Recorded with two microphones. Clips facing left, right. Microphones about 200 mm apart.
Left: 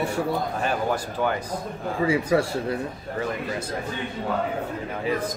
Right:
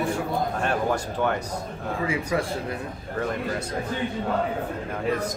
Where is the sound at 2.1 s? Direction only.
30° left (ahead or behind).